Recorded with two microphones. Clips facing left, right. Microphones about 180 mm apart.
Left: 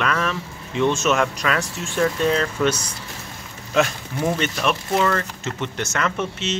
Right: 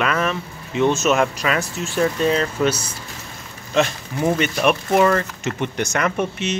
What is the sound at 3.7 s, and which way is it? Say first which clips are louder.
Speech: right 1 dB; centre (ahead or behind).